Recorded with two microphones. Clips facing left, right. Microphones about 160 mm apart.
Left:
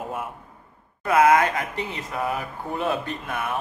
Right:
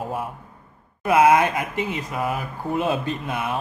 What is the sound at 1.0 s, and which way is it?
Speech, 20° right (ahead or behind).